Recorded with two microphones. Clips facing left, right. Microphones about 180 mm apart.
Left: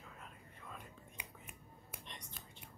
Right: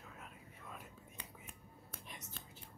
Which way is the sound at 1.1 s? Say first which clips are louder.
Even; 10° left (ahead or behind).